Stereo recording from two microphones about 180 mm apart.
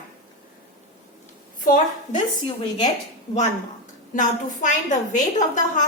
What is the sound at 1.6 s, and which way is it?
Speech, 45° left (ahead or behind).